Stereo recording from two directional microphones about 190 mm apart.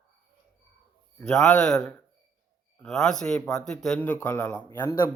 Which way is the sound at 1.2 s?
5° left (ahead or behind).